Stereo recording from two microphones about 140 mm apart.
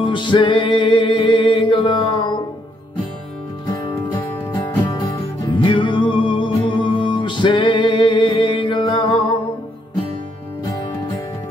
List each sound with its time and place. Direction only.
0.0 s music: 35° left (ahead or behind)
3.6 s music: 35° left (ahead or behind)